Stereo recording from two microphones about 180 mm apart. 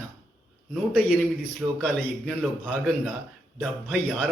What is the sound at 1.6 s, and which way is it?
Speech, 5° right (ahead or behind).